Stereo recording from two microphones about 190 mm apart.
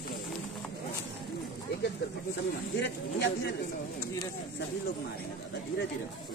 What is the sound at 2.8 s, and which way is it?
Speech, 65° left (ahead or behind).